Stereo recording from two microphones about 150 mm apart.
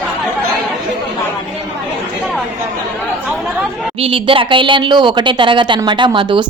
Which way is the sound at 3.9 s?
40° right (ahead or behind).